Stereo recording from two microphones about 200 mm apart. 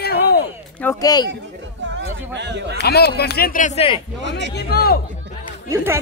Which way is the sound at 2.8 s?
55° left (ahead or behind).